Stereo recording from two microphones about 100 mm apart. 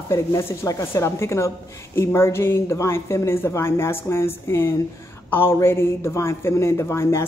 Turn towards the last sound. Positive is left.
turn(degrees=25)  # may be behind; listen again after turning